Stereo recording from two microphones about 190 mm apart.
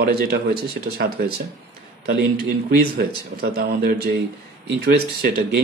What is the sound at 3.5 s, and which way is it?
Speech, 55° right (ahead or behind).